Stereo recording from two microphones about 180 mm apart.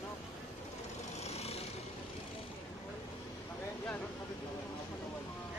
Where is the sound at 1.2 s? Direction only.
35° left (ahead or behind).